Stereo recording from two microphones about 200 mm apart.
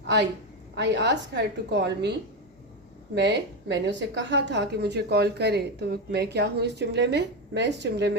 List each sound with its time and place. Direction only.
0.0 s a sound: 60° right (ahead or behind)
0.8 s a woman's voice: 60° right (ahead or behind)
3.2 s a woman's voice: 60° right (ahead or behind)